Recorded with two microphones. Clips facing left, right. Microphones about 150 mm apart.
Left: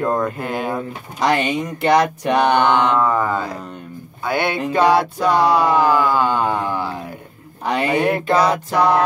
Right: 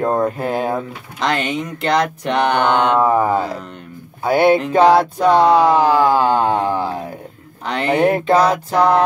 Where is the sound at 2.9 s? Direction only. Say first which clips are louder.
Right 3 dB; 40° right (ahead or behind).